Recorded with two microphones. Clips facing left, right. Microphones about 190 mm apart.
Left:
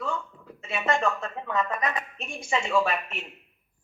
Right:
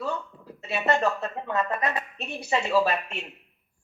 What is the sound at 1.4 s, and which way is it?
A woman's voice, 30° right (ahead or behind).